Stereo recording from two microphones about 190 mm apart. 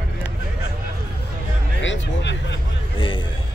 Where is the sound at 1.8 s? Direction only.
75° left (ahead or behind).